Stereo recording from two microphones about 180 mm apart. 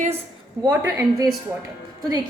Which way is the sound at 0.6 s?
20° right (ahead or behind).